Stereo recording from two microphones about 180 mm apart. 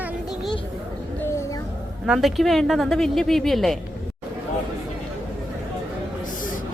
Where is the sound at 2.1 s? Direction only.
Centre (ahead or behind).